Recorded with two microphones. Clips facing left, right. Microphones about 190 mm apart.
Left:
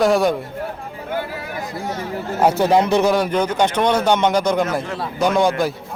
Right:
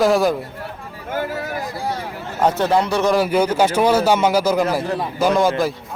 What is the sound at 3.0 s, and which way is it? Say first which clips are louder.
Speech: right 1 dB; centre (ahead or behind).